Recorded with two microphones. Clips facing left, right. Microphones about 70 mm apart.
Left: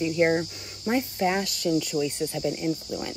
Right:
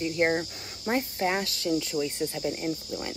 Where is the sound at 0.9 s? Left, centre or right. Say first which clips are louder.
Left 2 dB; centre.